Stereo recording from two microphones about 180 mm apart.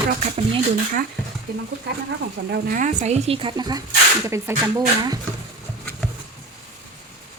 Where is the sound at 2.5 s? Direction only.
50° right (ahead or behind); by 5.2 s 15° right (ahead or behind).